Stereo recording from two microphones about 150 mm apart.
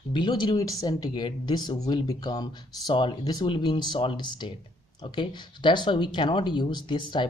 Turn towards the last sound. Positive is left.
turn(degrees=30)  # may be behind; listen again after turning